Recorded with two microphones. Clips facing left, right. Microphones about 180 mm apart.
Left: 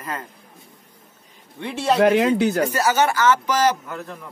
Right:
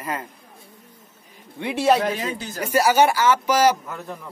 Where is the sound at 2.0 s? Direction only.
70° left (ahead or behind).